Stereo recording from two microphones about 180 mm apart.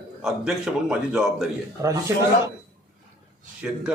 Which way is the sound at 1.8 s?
15° right (ahead or behind).